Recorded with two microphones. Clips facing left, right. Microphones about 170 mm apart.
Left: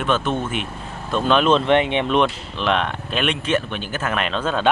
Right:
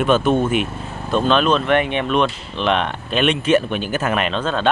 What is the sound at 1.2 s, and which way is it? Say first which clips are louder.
Speech: left 1 dB; 10° left (ahead or behind).